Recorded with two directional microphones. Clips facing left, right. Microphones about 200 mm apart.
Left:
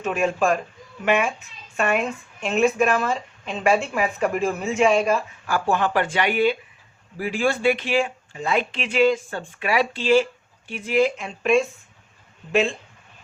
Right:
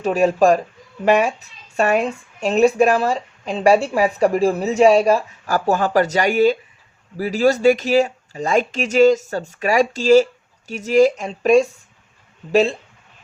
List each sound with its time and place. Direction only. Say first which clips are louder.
0.0 s speech: right 7 dB; 35° right (ahead or behind)